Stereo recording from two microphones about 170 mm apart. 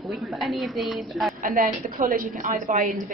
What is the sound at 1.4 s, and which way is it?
A woman's voice, 55° right (ahead or behind).